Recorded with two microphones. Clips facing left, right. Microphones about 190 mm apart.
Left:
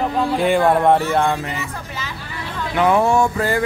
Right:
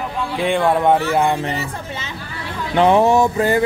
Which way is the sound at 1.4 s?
30° right (ahead or behind).